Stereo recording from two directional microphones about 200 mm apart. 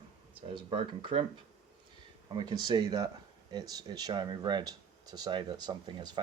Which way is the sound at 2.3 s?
25° right (ahead or behind).